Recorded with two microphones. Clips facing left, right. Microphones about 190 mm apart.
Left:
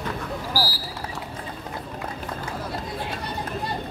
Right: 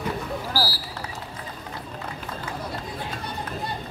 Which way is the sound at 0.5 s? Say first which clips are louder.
Even; 15° left (ahead or behind).